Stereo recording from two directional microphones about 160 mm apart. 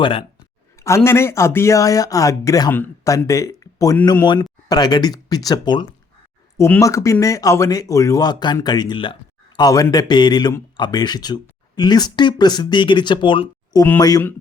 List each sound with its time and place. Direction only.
0.0 s speech: 30° left (ahead or behind)
0.9 s speech: 15° left (ahead or behind)